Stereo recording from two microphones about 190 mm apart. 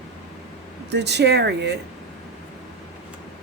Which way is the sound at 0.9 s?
65° right (ahead or behind).